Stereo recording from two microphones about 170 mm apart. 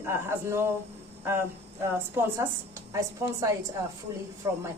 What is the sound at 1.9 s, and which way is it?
A woman's voice, 15° right (ahead or behind).